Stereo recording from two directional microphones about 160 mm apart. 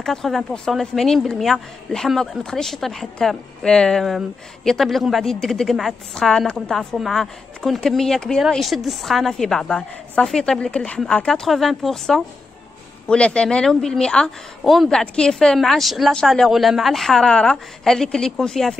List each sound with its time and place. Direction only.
0.0 s a woman's voice: centre (ahead or behind)